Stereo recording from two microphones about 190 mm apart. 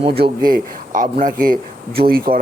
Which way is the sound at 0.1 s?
50° right (ahead or behind).